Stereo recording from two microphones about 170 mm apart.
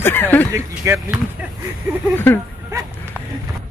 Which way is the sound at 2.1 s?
10° left (ahead or behind).